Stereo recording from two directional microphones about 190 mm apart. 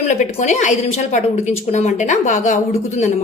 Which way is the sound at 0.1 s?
40° left (ahead or behind).